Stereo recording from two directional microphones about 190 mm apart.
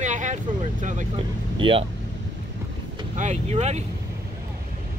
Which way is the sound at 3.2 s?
40° right (ahead or behind).